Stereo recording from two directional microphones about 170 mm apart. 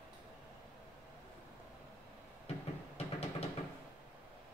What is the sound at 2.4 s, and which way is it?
Vehicle, 35° left (ahead or behind).